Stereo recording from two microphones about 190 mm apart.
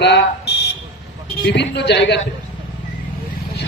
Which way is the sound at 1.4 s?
65° left (ahead or behind).